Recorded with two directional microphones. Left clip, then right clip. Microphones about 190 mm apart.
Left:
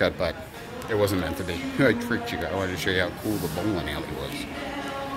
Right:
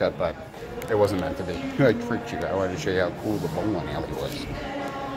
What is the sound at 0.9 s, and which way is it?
Speech, 15° left (ahead or behind).